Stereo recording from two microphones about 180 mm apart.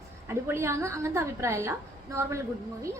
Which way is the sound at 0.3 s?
15° right (ahead or behind).